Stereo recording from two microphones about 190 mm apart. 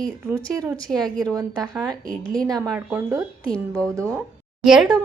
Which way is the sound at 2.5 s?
20° right (ahead or behind).